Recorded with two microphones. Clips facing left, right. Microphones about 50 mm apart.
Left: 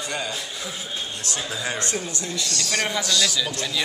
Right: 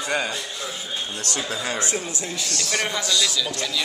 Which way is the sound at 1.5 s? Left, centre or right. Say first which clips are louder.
Even; right.